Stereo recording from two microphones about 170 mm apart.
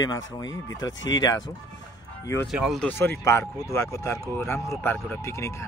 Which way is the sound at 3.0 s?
15° left (ahead or behind).